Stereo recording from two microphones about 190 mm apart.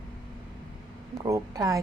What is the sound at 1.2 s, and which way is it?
Speech, 20° right (ahead or behind).